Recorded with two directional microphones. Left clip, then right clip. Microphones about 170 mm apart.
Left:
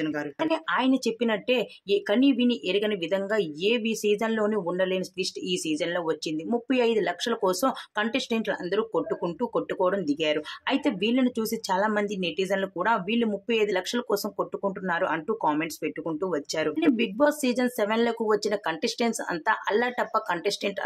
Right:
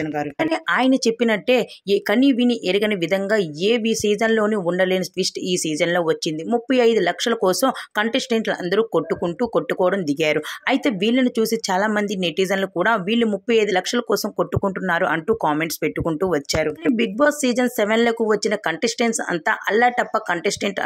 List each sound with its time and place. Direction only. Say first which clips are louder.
0.0 s speech: right 6 dB; 30° right (ahead or behind)